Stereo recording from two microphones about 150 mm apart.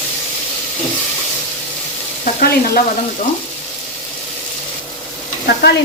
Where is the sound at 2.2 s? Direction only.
60° left (ahead or behind).